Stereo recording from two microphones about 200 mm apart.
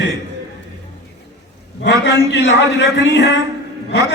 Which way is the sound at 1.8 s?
60° left (ahead or behind).